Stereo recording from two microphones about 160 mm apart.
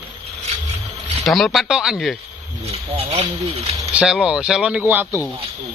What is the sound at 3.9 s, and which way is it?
Speech, 5° right (ahead or behind).